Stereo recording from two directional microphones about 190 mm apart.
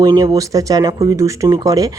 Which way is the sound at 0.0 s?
20° right (ahead or behind).